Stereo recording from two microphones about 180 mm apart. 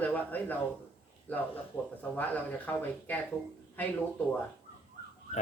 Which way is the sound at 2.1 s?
10° left (ahead or behind).